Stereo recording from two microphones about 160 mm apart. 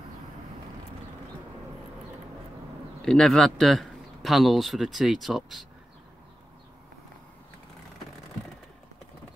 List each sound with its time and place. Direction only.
3.0 s a man's voice: 5° left (ahead or behind)